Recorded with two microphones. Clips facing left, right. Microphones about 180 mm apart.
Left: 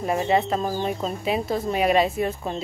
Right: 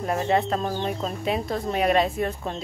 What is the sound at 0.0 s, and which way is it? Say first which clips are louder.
Speech: left 1 dB; 5° left (ahead or behind).